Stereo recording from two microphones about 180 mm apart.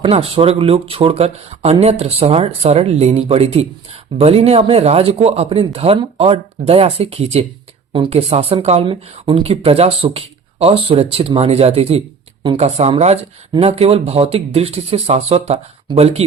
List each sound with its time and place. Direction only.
0.0 s a woman's voice: 30° right (ahead or behind)